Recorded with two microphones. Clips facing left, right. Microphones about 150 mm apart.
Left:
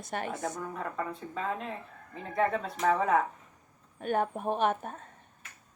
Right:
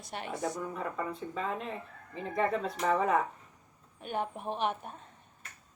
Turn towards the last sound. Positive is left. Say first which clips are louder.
# left 5 dB
turn(degrees=50)  # may be behind; listen again after turning